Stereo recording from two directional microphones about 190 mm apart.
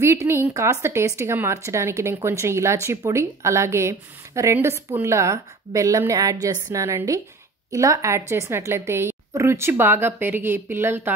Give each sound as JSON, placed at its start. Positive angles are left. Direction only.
{"t": 0.0, "sound": "a woman's voice", "side_deg": -15}